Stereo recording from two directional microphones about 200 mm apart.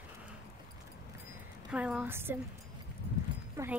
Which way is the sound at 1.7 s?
5° right (ahead or behind).